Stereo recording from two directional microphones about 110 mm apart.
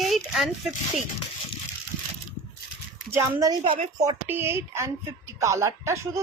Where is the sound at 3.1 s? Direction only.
30° right (ahead or behind).